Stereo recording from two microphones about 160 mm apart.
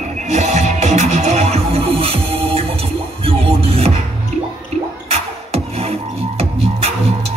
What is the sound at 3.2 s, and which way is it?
Music, 35° right (ahead or behind).